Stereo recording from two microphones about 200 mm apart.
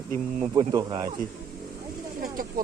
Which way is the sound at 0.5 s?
20° right (ahead or behind).